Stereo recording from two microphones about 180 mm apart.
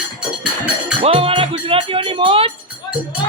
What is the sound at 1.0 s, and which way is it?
Music, 35° right (ahead or behind).